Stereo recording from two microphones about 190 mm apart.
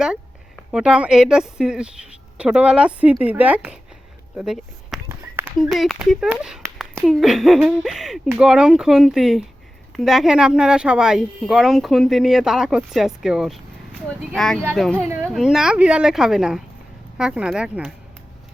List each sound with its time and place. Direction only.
0.0 s a woman's voice: 5° right (ahead or behind)
14.9 s speech: 10° right (ahead or behind)
15.3 s speech: centre (ahead or behind)